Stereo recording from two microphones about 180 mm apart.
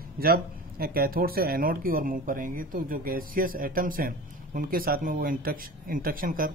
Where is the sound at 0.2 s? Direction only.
55° right (ahead or behind).